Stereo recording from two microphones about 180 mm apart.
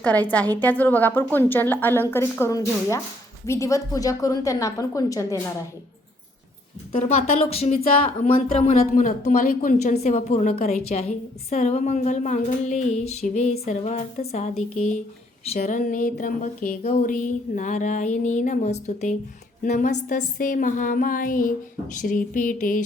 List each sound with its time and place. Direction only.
0.0 s a woman's voice: 10° left (ahead or behind)
6.9 s speech: 35° left (ahead or behind)
8.7 s speech: 50° left (ahead or behind)
16.8 s speech: 35° left (ahead or behind)
17.1 s speech: 50° left (ahead or behind)